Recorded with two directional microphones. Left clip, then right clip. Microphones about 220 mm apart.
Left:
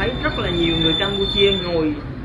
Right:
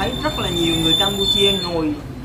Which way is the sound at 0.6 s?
20° right (ahead or behind).